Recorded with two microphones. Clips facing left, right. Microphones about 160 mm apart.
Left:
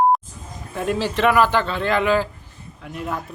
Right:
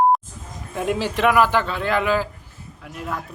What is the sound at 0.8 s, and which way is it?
A man's voice, 15° right (ahead or behind).